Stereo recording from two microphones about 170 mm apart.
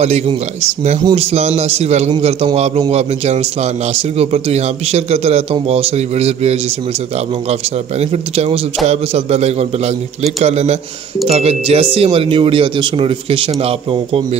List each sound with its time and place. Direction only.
0.0 s a man's voice: 40° right (ahead or behind)
8.0 s a man's voice: 40° right (ahead or behind)